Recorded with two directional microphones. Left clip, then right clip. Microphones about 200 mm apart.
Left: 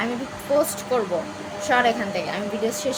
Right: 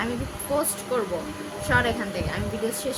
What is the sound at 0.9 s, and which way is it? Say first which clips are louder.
A woman's voice: left 3 dB; 15° right (ahead or behind).